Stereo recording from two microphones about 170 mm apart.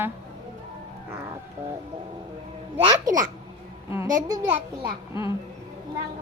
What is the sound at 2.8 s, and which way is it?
Speech, 20° right (ahead or behind).